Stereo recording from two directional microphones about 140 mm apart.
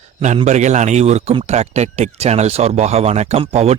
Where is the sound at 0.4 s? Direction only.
55° right (ahead or behind).